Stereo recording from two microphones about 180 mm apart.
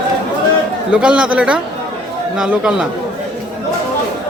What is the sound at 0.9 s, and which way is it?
Speech, 5° right (ahead or behind).